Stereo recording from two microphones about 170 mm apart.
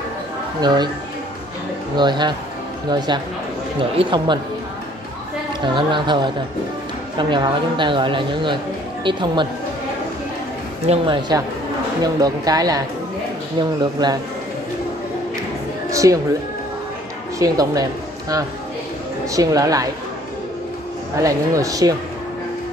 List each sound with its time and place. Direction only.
0.6 s speech: 25° right (ahead or behind)
2.0 s speech: 25° right (ahead or behind)
3.9 s speech: 30° right (ahead or behind)
5.6 s speech: 30° right (ahead or behind)
10.9 s speech: 25° right (ahead or behind)
15.9 s music: 20° right (ahead or behind)
17.4 s speech: 20° right (ahead or behind)
19.3 s speech: 20° right (ahead or behind)
21.2 s speech: 20° right (ahead or behind)